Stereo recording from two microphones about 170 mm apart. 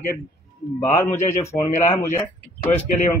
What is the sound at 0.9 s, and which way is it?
A man's voice, 15° left (ahead or behind).